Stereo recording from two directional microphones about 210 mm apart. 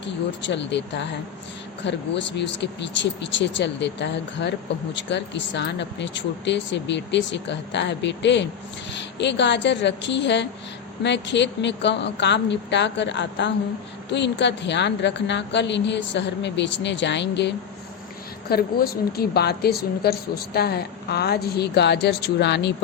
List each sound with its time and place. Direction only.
0.0 s speech: 55° left (ahead or behind)
18.5 s a woman's voice: 50° left (ahead or behind)